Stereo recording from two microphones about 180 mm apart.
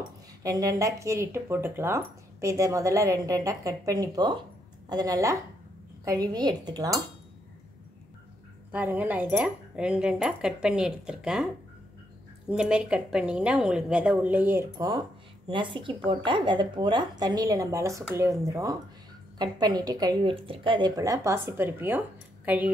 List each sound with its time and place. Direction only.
0.4 s speech: 20° right (ahead or behind)
8.7 s speech: 10° right (ahead or behind)
12.4 s speech: 5° right (ahead or behind)